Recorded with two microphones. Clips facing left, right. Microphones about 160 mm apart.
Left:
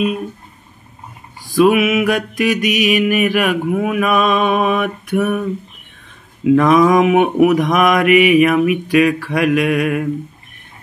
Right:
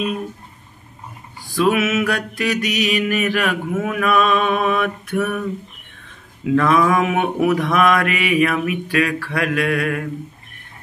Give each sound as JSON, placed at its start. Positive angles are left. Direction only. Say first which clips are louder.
{"t": 1.6, "sound": "mantra", "louder": "left 5 dB", "side_deg": 15}
{"t": 6.5, "sound": "mantra", "louder": "left 5 dB", "side_deg": 15}